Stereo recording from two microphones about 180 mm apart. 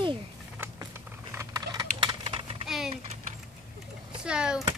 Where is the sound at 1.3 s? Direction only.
20° right (ahead or behind).